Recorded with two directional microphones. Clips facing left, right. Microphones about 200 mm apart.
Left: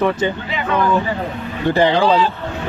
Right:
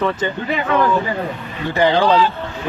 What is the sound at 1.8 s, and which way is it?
Speech, 5° left (ahead or behind).